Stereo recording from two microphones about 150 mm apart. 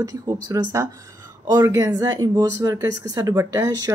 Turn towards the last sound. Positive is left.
turn(degrees=-25)  # may be behind; listen again after turning